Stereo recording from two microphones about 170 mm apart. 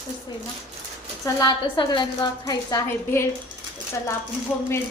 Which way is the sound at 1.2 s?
25° left (ahead or behind).